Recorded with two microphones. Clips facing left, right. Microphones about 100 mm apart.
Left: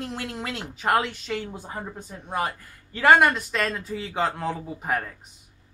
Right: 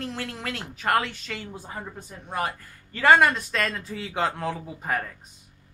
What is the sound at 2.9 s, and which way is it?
Speech, 10° left (ahead or behind).